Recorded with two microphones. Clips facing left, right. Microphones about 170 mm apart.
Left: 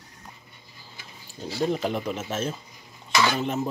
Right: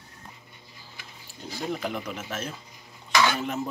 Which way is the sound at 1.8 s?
25° left (ahead or behind).